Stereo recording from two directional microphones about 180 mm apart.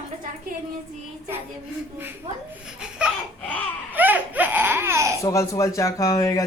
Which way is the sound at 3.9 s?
10° right (ahead or behind).